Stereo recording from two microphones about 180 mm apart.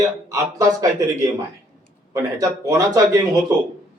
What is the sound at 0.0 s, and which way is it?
A man's voice, 15° right (ahead or behind).